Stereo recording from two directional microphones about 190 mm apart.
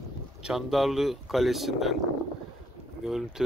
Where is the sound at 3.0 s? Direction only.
Centre (ahead or behind).